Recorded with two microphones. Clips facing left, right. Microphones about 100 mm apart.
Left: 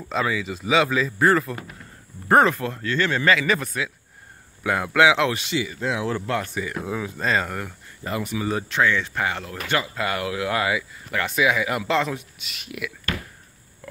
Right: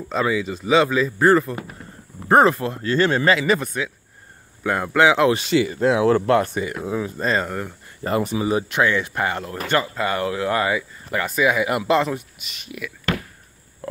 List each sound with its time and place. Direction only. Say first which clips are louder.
0.1 s speech: right 3 dB; centre (ahead or behind)
2.2 s speech: right 2 dB; 25° right (ahead or behind)
3.5 s speech: right 3 dB; centre (ahead or behind)
5.5 s speech: right 8 dB; 45° right (ahead or behind)
6.7 s speech: right 3 dB; 10° right (ahead or behind)
8.0 s speech: right 6 dB; 40° right (ahead or behind)
8.5 s speech: even; 10° right (ahead or behind)
9.8 s speech: right 4 dB; 30° right (ahead or behind)
10.7 s speech: right 2 dB; 5° right (ahead or behind)